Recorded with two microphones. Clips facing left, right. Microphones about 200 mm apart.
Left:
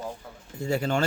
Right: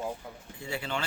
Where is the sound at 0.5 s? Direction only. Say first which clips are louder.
Left 9 dB; 45° left (ahead or behind).